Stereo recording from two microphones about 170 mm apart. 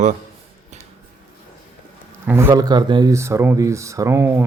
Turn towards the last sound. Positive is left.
turn(degrees=-15)  # may be behind; listen again after turning